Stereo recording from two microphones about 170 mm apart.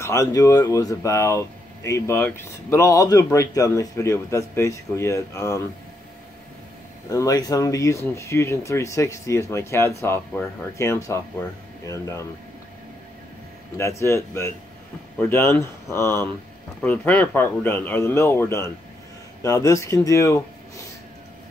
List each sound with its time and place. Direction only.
0.0 s speech: 20° left (ahead or behind)
7.1 s speech: 20° left (ahead or behind)
13.7 s speech: 15° left (ahead or behind)